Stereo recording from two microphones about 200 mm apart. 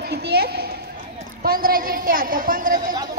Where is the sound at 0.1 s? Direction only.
55° right (ahead or behind).